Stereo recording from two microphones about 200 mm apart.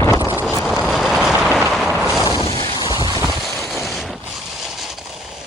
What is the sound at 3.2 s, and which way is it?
Vehicle, centre (ahead or behind).